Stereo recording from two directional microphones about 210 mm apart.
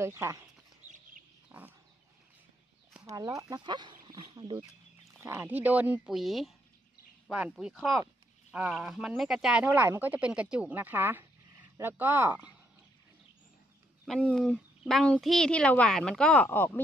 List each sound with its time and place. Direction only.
0.0 s speech: 15° right (ahead or behind)
0.8 s bird: 35° right (ahead or behind)
1.5 s a sound: 10° right (ahead or behind)
2.9 s chicken: 15° right (ahead or behind)
3.4 s speech: 20° right (ahead or behind)
4.6 s speech: 10° right (ahead or behind)
14.0 s speech: centre (ahead or behind)